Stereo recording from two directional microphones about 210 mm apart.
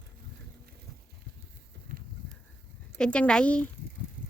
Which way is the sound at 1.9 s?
40° right (ahead or behind).